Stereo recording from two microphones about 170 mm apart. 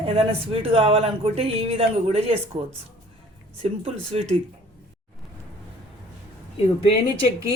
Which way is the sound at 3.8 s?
35° right (ahead or behind).